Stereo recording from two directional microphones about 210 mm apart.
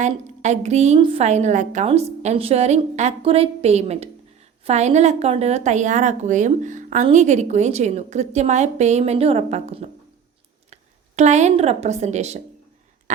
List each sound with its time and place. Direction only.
0.0 s a woman's voice: 35° right (ahead or behind)
11.2 s a woman's voice: 35° right (ahead or behind)